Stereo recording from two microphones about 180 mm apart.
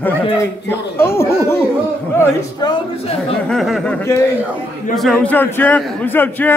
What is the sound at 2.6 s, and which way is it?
Speech, 25° left (ahead or behind).